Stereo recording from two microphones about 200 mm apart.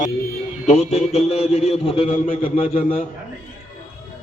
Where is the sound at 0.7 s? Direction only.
35° left (ahead or behind).